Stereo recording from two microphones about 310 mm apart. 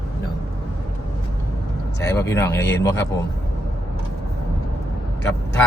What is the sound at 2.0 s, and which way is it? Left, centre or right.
Speech, centre.